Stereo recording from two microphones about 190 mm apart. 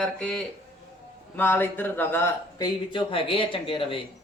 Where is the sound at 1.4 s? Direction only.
10° left (ahead or behind).